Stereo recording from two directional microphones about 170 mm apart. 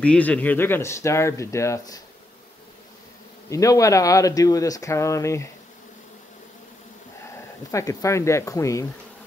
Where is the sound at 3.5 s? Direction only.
20° left (ahead or behind).